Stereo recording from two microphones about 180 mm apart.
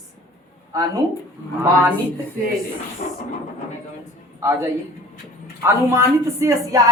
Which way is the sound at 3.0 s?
55° left (ahead or behind).